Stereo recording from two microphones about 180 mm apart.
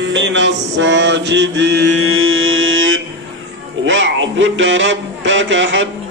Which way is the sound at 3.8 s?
90° right.